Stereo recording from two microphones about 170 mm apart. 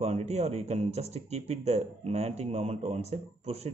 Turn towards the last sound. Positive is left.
turn(degrees=-40)  # may be behind; listen again after turning